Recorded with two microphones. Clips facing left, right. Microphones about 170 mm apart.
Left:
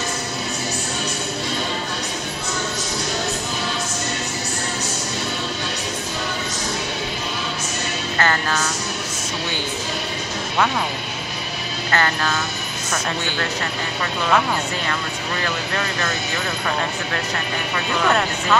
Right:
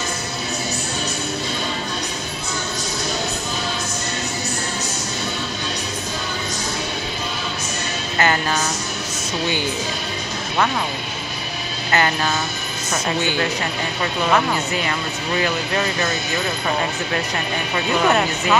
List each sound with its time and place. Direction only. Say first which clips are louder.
8.2 s music: right 2 dB; 15° right (ahead or behind)
11.9 s speech: right 2 dB; 15° right (ahead or behind)
18.0 s speech: right 1 dB; 10° right (ahead or behind)